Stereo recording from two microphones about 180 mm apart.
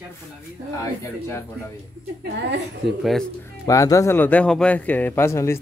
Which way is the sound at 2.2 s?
75° right (ahead or behind).